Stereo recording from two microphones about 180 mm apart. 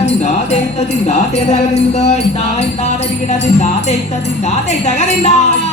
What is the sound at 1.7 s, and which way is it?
Music, 35° left (ahead or behind).